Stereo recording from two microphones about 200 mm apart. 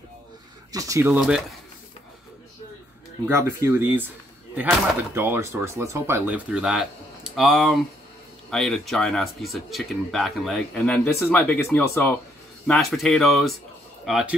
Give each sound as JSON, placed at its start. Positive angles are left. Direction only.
{"t": 0.7, "sound": "speech", "side_deg": -15}
{"t": 3.3, "sound": "speech", "side_deg": -10}